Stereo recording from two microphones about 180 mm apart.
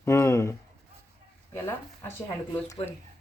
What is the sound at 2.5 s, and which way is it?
Speech, 15° left (ahead or behind).